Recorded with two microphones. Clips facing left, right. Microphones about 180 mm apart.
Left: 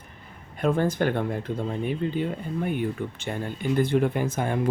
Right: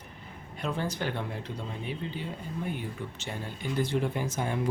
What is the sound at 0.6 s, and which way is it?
Speech, 50° left (ahead or behind).